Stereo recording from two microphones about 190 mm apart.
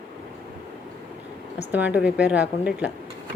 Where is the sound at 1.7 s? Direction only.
10° right (ahead or behind).